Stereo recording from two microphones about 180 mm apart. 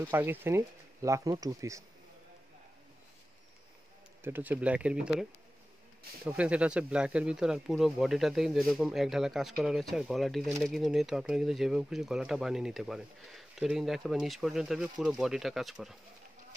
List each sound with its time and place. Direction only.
0.0 s speech: 10° right (ahead or behind)
4.2 s speech: 10° right (ahead or behind)
6.2 s speech: 5° right (ahead or behind)